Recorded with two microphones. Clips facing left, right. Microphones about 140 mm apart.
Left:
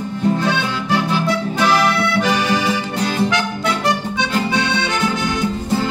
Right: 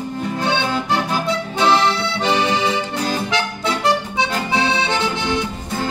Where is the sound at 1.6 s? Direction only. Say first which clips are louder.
Right 1 dB; 25° right (ahead or behind).